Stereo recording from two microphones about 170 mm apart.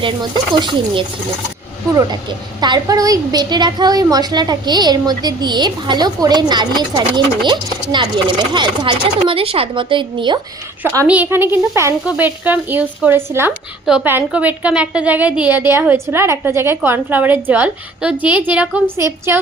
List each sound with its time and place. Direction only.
0.0 s a woman's voice: 30° right (ahead or behind)
10.9 s a woman's voice: 10° right (ahead or behind)